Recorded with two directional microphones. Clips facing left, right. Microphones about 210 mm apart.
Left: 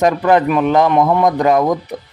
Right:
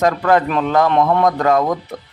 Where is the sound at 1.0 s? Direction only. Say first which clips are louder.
Left 2 dB; 5° left (ahead or behind).